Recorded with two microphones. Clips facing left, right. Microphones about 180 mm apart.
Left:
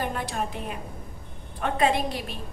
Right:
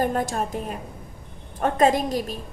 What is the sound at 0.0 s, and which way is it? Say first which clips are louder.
A woman's voice: right 6 dB; 45° right (ahead or behind).